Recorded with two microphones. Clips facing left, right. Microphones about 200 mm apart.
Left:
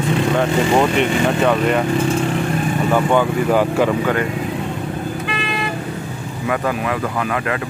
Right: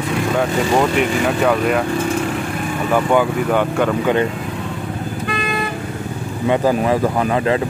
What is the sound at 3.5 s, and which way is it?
Speech, 5° left (ahead or behind).